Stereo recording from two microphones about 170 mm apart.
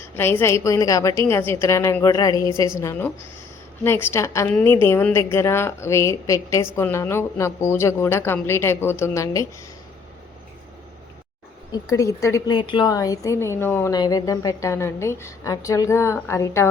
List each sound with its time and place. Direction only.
0.2 s a woman's voice: 15° left (ahead or behind)
11.7 s a woman's voice: 20° left (ahead or behind)
13.9 s a woman's voice: 25° left (ahead or behind)